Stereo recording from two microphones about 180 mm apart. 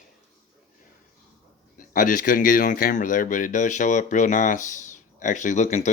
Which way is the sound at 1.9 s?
50° left (ahead or behind).